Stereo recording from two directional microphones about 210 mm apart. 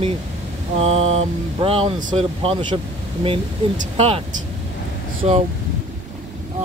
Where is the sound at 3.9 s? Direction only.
25° right (ahead or behind).